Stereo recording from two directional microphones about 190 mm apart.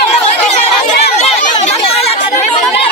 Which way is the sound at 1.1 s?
35° left (ahead or behind).